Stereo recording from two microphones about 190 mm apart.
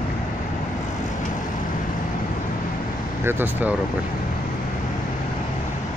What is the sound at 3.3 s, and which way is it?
Speech, 10° right (ahead or behind).